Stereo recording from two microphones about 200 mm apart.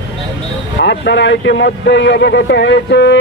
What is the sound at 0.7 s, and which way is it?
A man's voice, 60° left (ahead or behind).